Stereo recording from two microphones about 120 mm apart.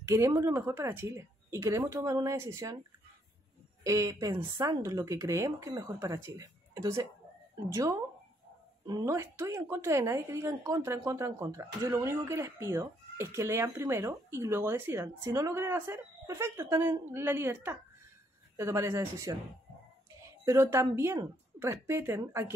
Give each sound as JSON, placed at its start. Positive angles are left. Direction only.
{"t": 0.0, "sound": "a woman's voice", "side_deg": -25}
{"t": 3.8, "sound": "a woman's voice", "side_deg": -25}